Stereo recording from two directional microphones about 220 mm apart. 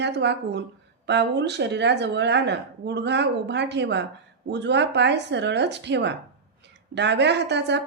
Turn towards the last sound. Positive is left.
turn(degrees=-50)  # may be behind; listen again after turning